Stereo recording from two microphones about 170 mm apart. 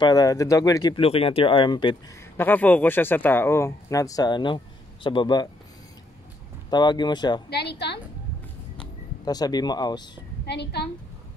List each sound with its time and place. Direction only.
0.0 s speech: 20° left (ahead or behind)
2.3 s speech: 10° left (ahead or behind)
6.7 s speech: 25° left (ahead or behind)
7.4 s a woman's voice: 75° left (ahead or behind)
9.2 s speech: 25° left (ahead or behind)
10.4 s a woman's voice: 75° left (ahead or behind)